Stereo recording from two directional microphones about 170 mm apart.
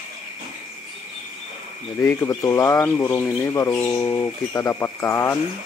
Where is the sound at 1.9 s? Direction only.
15° left (ahead or behind).